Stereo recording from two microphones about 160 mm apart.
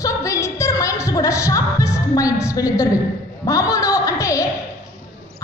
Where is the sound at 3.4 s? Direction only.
20° left (ahead or behind).